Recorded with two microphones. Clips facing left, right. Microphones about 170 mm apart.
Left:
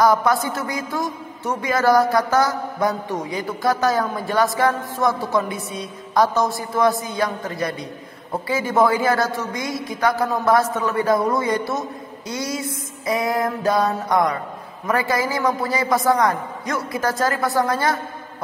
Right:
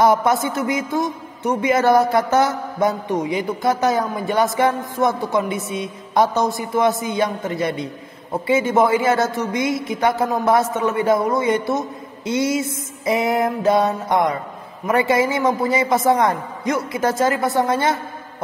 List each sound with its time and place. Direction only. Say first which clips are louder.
0.0 s a man's voice: right 1 dB; 25° right (ahead or behind)